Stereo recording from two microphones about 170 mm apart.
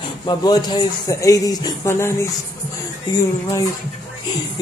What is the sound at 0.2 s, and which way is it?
Speech, 25° left (ahead or behind).